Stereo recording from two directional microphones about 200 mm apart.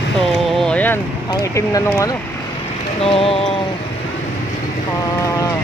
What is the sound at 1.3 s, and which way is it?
Speech, 15° left (ahead or behind).